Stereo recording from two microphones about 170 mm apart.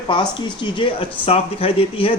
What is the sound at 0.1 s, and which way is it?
Speech, 25° left (ahead or behind).